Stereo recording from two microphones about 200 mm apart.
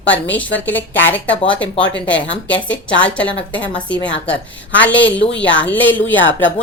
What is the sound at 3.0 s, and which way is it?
A woman's voice, 5° left (ahead or behind).